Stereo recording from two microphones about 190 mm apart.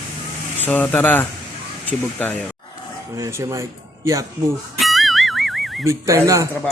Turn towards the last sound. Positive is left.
turn(degrees=-15)  # may be behind; listen again after turning